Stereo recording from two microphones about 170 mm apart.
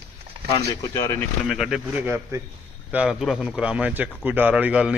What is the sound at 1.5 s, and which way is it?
Speech, 5° right (ahead or behind).